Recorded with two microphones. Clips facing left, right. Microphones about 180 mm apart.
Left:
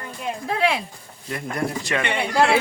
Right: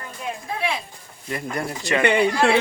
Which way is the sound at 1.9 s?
5° right (ahead or behind).